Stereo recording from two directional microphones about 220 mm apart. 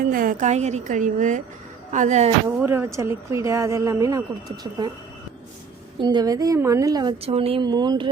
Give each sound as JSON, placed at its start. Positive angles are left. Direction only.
{"t": 0.0, "sound": "a woman's voice", "side_deg": -40}
{"t": 2.6, "sound": "speech", "side_deg": -10}
{"t": 6.0, "sound": "a woman's voice", "side_deg": -20}